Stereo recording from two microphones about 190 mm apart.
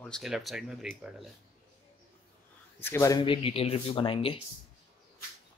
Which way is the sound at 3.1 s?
25° left (ahead or behind).